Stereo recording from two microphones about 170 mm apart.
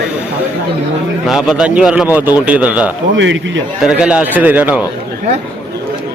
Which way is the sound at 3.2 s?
90° right.